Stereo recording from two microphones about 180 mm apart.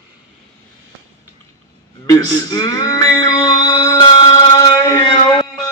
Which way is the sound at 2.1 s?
20° left (ahead or behind).